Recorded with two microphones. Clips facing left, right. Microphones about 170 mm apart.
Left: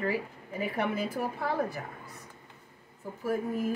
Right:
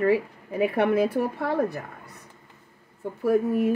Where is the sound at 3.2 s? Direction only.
70° right (ahead or behind).